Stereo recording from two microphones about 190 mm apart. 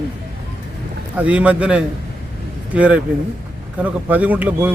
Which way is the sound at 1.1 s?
5° right (ahead or behind).